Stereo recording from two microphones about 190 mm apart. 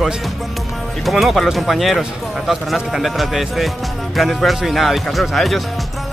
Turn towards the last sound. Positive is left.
turn(degrees=0)  # may be behind; listen again after turning